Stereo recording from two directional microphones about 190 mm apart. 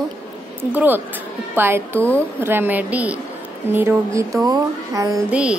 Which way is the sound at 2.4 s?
10° right (ahead or behind).